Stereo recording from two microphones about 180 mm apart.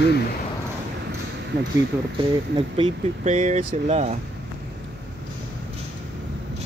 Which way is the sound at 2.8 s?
35° right (ahead or behind).